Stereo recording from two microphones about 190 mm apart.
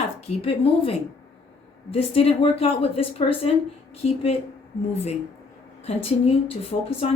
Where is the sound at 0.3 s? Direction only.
30° left (ahead or behind).